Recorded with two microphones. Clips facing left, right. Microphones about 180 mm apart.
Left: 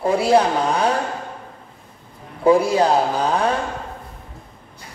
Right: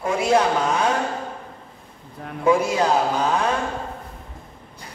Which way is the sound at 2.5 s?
35° left (ahead or behind).